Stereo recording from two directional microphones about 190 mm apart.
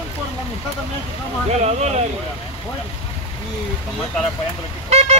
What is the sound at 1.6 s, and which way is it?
Speech, 35° right (ahead or behind).